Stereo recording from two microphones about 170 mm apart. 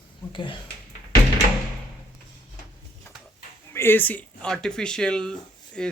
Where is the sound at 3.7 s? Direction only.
15° left (ahead or behind).